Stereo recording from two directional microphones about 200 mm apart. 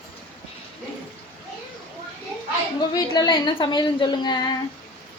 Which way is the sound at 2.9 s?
20° left (ahead or behind).